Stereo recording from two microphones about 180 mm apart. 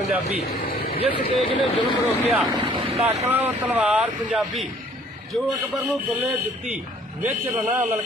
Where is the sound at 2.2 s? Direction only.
Centre (ahead or behind).